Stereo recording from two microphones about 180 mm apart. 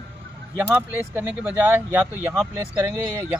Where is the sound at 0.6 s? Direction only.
10° right (ahead or behind).